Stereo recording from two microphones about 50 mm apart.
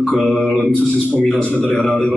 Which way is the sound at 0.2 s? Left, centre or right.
Centre.